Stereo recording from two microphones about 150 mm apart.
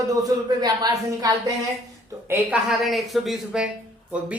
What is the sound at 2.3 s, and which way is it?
Speech, 5° right (ahead or behind).